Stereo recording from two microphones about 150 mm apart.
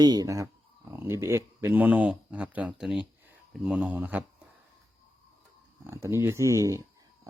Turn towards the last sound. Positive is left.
turn(degrees=-20)  # may be behind; listen again after turning